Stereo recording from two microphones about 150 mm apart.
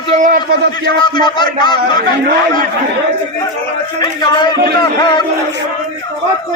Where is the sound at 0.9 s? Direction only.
30° left (ahead or behind).